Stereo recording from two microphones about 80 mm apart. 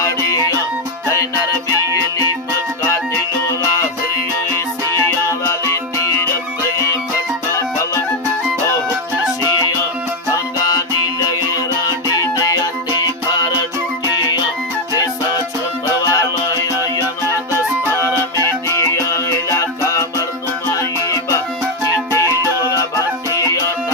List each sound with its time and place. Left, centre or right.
0.0 s music: left
5.5 s music: left
10.3 s music: left
16.0 s music: left
18.7 s music: left